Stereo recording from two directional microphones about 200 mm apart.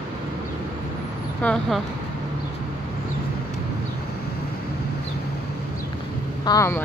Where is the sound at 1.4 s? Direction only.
5° left (ahead or behind).